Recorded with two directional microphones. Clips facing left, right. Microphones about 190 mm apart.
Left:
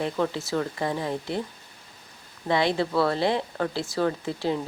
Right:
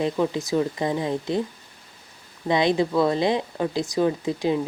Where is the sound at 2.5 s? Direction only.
15° right (ahead or behind).